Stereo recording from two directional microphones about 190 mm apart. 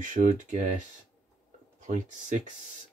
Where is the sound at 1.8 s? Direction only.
40° right (ahead or behind).